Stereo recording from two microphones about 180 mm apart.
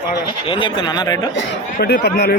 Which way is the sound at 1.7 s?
60° left (ahead or behind).